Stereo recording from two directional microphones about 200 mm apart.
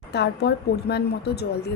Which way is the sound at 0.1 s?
55° left (ahead or behind).